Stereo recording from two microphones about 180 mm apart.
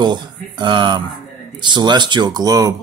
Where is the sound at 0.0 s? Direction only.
25° right (ahead or behind).